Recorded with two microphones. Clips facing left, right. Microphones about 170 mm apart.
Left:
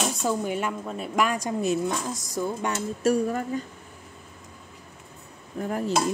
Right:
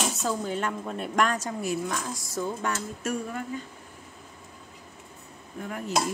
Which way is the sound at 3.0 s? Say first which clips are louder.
Left 8 dB; 35° left (ahead or behind).